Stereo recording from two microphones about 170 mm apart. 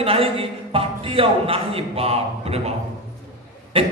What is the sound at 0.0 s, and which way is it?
A man's voice, 35° right (ahead or behind).